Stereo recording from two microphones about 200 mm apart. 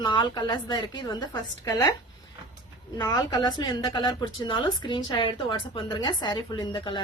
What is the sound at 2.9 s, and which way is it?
A woman's voice, 20° left (ahead or behind).